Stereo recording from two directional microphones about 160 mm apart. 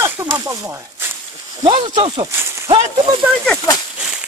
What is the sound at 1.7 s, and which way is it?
Speech, 35° right (ahead or behind).